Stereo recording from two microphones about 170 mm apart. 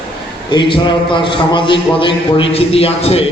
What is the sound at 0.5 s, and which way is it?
A man's voice, 25° left (ahead or behind).